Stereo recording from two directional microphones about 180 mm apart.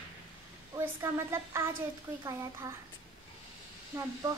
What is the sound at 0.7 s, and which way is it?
A child's voice, 15° right (ahead or behind).